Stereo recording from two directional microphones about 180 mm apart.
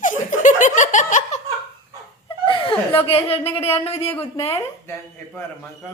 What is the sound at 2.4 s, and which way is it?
Chuckle, 30° left (ahead or behind).